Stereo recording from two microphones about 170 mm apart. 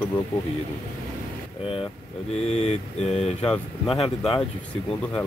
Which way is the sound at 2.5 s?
40° left (ahead or behind).